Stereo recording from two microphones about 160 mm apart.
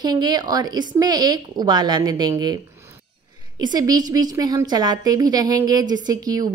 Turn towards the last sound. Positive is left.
turn(degrees=-25)  # may be behind; listen again after turning